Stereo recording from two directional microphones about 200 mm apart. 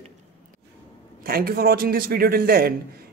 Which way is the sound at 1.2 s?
50° right (ahead or behind).